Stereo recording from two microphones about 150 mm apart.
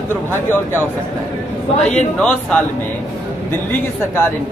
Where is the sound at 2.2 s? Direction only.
10° left (ahead or behind).